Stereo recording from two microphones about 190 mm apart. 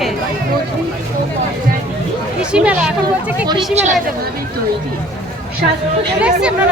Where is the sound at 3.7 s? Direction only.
40° right (ahead or behind).